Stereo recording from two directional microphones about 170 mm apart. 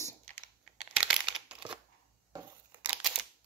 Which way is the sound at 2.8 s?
10° right (ahead or behind).